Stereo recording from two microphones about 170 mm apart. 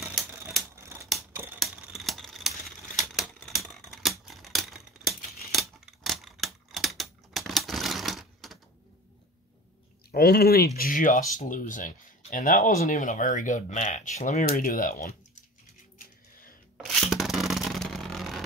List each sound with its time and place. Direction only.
1.3 s typewriter: 10° right (ahead or behind)
1.6 s a sound: centre (ahead or behind)
3.0 s typewriter: centre (ahead or behind)
10.1 s speech: 65° left (ahead or behind)
10.8 s speech: 55° left (ahead or behind)
14.5 s speech: 55° left (ahead or behind)
16.7 s a sound: centre (ahead or behind)